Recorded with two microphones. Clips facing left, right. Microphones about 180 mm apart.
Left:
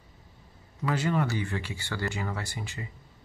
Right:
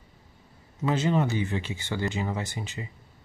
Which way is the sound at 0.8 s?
20° right (ahead or behind).